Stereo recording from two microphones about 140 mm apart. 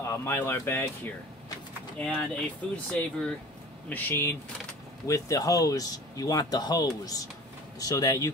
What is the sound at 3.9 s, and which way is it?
Speech, 20° left (ahead or behind).